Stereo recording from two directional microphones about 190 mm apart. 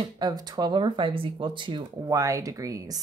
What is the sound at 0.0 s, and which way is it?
Speech, 20° right (ahead or behind).